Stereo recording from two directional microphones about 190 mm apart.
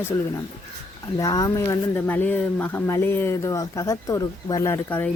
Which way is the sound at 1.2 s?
20° left (ahead or behind).